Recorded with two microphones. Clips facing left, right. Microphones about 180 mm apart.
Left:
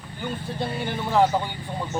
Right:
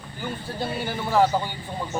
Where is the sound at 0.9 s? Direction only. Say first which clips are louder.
Even; 5° right (ahead or behind).